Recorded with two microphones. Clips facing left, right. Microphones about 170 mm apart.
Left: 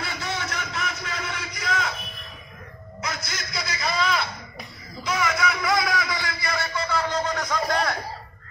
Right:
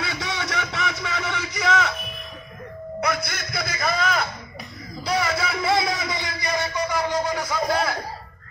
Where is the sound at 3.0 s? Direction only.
60° right (ahead or behind).